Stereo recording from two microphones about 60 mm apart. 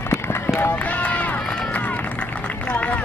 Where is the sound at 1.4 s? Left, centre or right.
Centre.